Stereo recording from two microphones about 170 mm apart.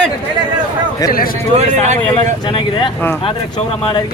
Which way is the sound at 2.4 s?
30° left (ahead or behind).